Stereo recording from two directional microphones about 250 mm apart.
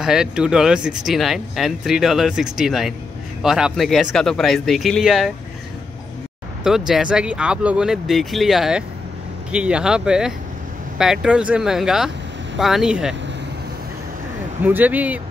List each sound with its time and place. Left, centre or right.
0.0 s speech: centre
6.9 s speech: centre
14.6 s speech: centre